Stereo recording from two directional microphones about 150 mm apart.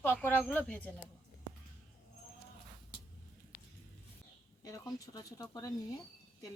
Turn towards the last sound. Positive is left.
turn(degrees=25)  # may be behind; listen again after turning